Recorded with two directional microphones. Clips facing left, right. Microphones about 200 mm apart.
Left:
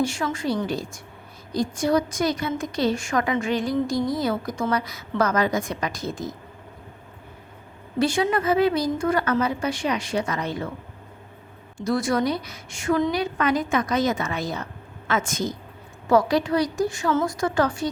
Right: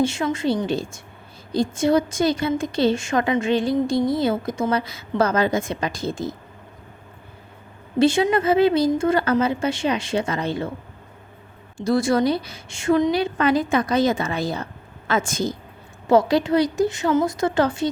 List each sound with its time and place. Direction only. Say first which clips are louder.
0.0 s a woman's voice: right 4 dB; 25° right (ahead or behind)
7.9 s a woman's voice: right 4 dB; 25° right (ahead or behind)
11.8 s a woman's voice: right 4 dB; 30° right (ahead or behind)